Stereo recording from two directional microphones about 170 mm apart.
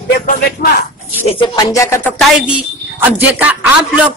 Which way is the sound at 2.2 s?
5° right (ahead or behind).